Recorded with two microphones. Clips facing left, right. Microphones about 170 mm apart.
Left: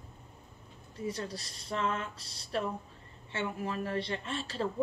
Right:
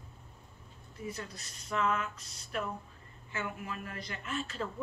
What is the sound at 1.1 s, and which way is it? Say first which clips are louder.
A woman's voice: left 5 dB; 35° left (ahead or behind).